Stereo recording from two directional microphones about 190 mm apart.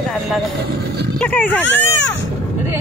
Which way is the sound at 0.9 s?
60° right (ahead or behind).